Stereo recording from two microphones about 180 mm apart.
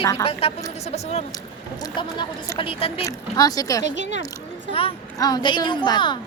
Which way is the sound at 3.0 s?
20° left (ahead or behind).